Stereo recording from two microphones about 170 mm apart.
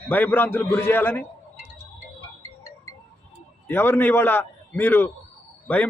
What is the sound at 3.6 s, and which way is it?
Speech, 10° left (ahead or behind).